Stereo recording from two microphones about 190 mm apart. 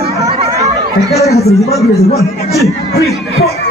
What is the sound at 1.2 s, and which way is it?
Speech, 15° left (ahead or behind).